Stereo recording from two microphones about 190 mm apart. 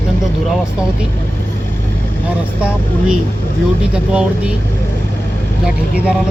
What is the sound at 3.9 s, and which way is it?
Speech, 5° right (ahead or behind).